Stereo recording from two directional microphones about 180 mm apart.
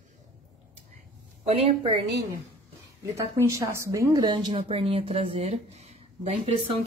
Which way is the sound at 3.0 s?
15° right (ahead or behind).